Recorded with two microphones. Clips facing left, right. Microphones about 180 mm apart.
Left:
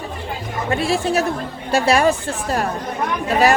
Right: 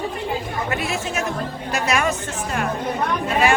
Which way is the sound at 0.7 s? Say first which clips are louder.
Left 9 dB; 30° left (ahead or behind).